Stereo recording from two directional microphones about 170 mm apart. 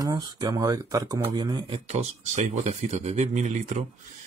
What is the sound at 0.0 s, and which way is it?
Speech, 25° right (ahead or behind).